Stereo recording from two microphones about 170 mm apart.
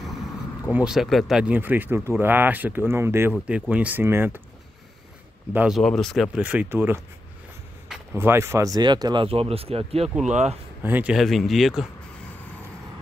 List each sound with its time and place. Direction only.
0.7 s speech: 5° right (ahead or behind)
5.5 s speech: 10° right (ahead or behind)
5.8 s speech: centre (ahead or behind); by 10.0 s 35° right (ahead or behind)
10.0 s speech: 5° right (ahead or behind)
10.3 s speech: 40° right (ahead or behind)
10.8 s speech: 10° right (ahead or behind)